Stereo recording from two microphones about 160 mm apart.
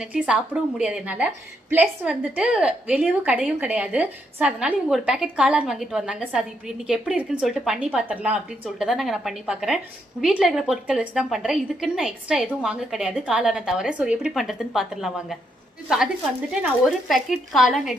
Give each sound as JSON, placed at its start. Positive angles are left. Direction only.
{"t": 0.0, "sound": "a woman's voice", "side_deg": -10}
{"t": 17.1, "sound": "a woman's voice", "side_deg": 0}